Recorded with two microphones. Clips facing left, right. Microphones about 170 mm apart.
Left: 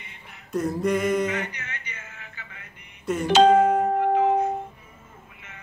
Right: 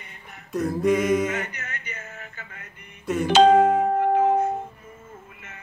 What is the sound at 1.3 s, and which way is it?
Music, 45° right (ahead or behind).